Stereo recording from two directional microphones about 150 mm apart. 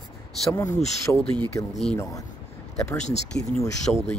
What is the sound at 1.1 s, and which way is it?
Speech, 10° left (ahead or behind).